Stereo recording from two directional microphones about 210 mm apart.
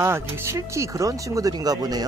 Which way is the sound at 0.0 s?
10° right (ahead or behind).